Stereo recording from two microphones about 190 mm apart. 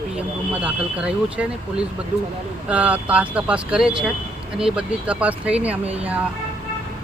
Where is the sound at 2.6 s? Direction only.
5° right (ahead or behind).